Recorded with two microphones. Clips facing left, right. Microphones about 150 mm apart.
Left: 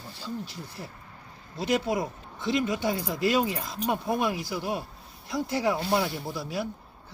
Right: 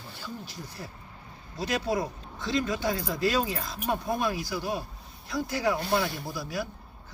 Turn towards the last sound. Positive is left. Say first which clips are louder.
# left 2 dB
turn(degrees=25)  # may be behind; listen again after turning